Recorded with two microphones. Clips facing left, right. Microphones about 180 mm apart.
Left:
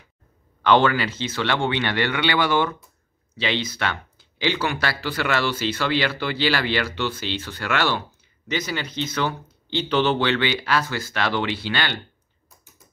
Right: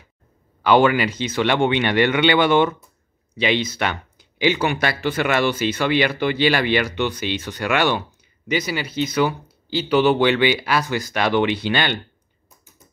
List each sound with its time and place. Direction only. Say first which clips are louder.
0.6 s speech: right 3 dB; 10° right (ahead or behind)